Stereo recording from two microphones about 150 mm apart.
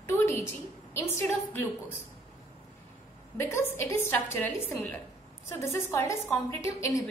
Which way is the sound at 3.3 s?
15° left (ahead or behind).